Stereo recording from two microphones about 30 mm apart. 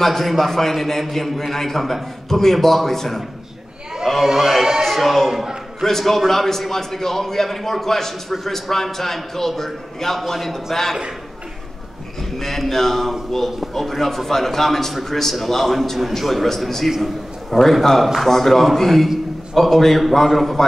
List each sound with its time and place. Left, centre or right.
0.0 s a man's voice: centre
4.1 s crowd: centre
4.4 s a man's voice: centre
12.2 s a man's voice: centre
18.3 s a man's voice: centre